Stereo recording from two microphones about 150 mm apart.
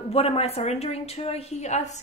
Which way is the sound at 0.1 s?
40° left (ahead or behind).